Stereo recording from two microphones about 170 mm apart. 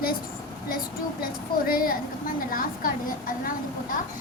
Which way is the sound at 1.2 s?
60° left (ahead or behind).